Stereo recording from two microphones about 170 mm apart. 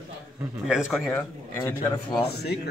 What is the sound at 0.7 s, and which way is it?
Speech, centre (ahead or behind).